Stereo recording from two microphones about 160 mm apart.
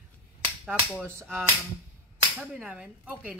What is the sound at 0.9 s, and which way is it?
Speech, 15° right (ahead or behind).